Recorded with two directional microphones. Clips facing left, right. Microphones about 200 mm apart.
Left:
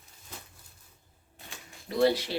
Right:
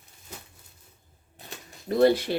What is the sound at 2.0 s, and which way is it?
Speech, 50° right (ahead or behind).